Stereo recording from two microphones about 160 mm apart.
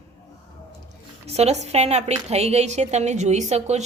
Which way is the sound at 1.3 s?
40° right (ahead or behind).